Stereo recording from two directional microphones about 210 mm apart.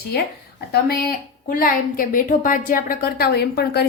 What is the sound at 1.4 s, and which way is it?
A woman's voice, 45° left (ahead or behind).